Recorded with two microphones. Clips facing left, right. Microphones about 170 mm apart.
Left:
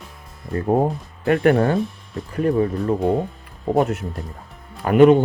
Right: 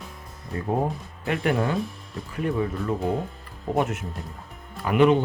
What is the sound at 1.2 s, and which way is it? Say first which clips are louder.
Speech: left 8 dB; 50° left (ahead or behind).